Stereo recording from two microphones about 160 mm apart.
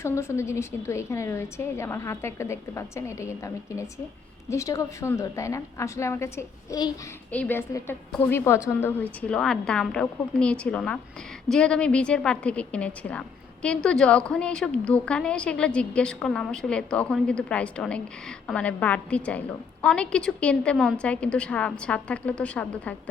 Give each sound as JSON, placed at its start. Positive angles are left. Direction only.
{"t": 0.0, "sound": "a woman's voice", "side_deg": 15}
{"t": 7.3, "sound": "a woman's voice", "side_deg": 10}
{"t": 9.3, "sound": "a woman's voice", "side_deg": 5}